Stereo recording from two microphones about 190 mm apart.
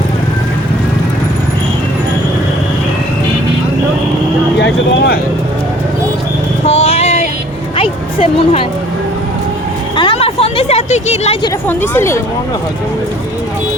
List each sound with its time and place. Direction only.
4.5 s speech: 60° left (ahead or behind)
6.7 s vehicle: 30° left (ahead or behind)
7.8 s music: 30° left (ahead or behind)
10.0 s a sound: 30° left (ahead or behind)
11.7 s speech: 10° left (ahead or behind)